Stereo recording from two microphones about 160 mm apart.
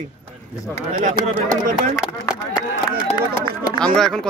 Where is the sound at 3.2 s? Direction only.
25° left (ahead or behind).